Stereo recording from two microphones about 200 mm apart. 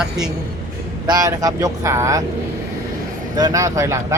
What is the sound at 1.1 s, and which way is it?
Speech, 20° right (ahead or behind).